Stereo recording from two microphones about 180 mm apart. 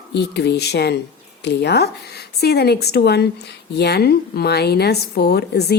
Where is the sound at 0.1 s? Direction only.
70° left (ahead or behind).